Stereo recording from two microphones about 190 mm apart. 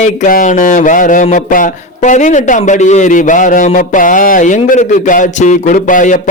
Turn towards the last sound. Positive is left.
turn(degrees=45)  # may be behind; listen again after turning